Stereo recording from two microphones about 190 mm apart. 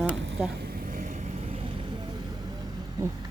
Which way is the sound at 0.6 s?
50° right (ahead or behind).